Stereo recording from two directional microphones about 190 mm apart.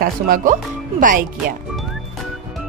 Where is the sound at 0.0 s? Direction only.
50° right (ahead or behind).